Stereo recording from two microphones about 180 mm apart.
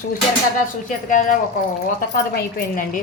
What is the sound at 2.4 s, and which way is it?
Speech, 55° left (ahead or behind).